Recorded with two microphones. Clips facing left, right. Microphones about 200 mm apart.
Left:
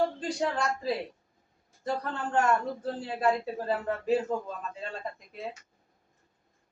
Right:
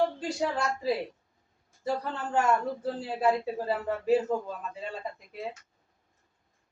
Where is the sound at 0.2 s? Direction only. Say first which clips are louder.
Even; 5° right (ahead or behind).